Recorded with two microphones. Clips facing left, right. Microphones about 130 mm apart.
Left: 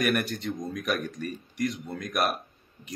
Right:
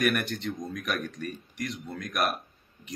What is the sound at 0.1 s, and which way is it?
Speech, centre (ahead or behind).